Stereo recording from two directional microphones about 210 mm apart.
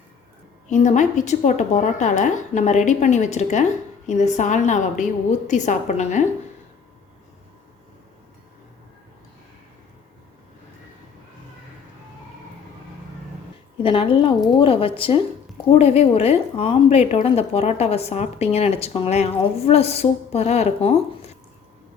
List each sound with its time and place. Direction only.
0.7 s a woman's voice: 35° left (ahead or behind)
13.8 s a woman's voice: 25° left (ahead or behind)